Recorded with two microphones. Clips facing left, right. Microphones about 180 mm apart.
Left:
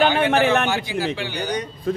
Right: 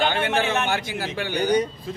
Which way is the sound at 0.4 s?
60° left (ahead or behind).